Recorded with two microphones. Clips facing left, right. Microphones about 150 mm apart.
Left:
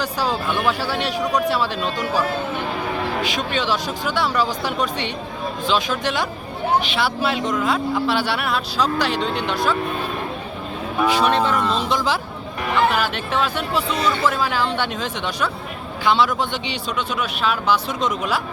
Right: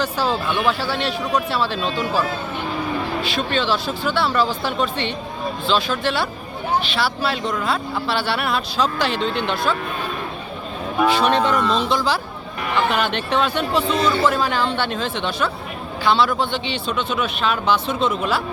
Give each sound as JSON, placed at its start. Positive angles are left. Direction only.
{"t": 0.0, "sound": "speech", "side_deg": 15}
{"t": 3.2, "sound": "speech", "side_deg": 15}
{"t": 11.1, "sound": "speech", "side_deg": 5}
{"t": 13.9, "sound": "a man's voice", "side_deg": -30}
{"t": 14.3, "sound": "speech", "side_deg": 5}